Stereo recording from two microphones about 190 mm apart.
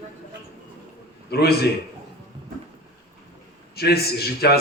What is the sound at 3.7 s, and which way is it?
Speech, 55° left (ahead or behind).